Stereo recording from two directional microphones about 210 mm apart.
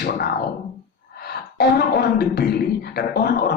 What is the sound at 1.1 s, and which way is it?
Speech, 50° left (ahead or behind).